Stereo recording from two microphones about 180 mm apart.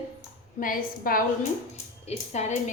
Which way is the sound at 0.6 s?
50° left (ahead or behind).